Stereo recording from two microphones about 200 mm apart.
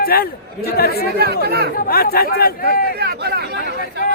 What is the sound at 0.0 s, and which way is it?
Speech, 50° left (ahead or behind).